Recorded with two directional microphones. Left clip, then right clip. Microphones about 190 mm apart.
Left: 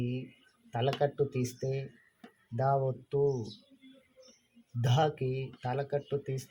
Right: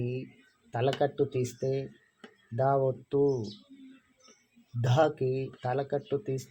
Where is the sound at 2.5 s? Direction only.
50° right (ahead or behind).